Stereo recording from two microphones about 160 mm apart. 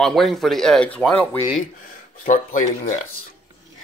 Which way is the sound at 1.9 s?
55° left (ahead or behind).